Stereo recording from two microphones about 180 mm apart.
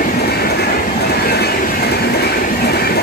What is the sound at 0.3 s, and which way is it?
Train, 60° left (ahead or behind).